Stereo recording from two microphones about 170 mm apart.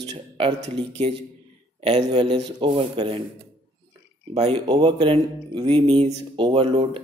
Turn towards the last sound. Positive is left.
turn(degrees=-35)  # may be behind; listen again after turning